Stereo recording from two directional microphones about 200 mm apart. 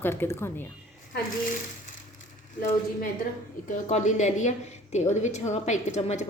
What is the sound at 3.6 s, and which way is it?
A woman's voice, 40° left (ahead or behind).